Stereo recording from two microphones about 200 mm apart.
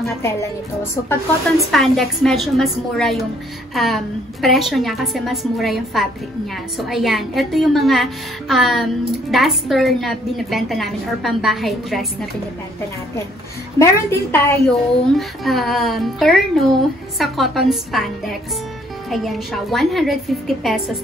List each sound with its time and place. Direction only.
0.2 s a woman's voice: 15° left (ahead or behind)
1.7 s a woman's voice: centre (ahead or behind)
13.7 s a woman's voice: 10° left (ahead or behind)
14.7 s a woman's voice: centre (ahead or behind)